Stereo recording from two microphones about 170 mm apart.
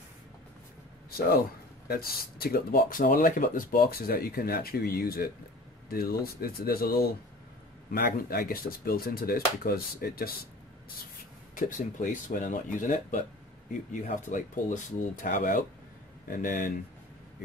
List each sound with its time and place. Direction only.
1.9 s speech: 65° left (ahead or behind)
11.5 s speech: 50° left (ahead or behind)